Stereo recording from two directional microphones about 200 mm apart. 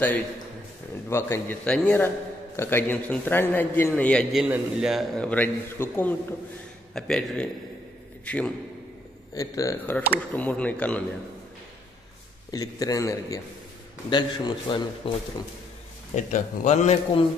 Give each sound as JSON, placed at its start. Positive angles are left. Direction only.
{"t": 1.1, "sound": "a man's voice", "side_deg": 10}
{"t": 9.3, "sound": "a man's voice", "side_deg": 15}
{"t": 12.4, "sound": "a man's voice", "side_deg": 20}
{"t": 16.2, "sound": "a man's voice", "side_deg": 35}